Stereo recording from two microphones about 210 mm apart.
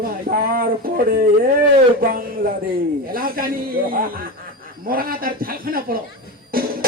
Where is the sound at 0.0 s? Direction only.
45° right (ahead or behind).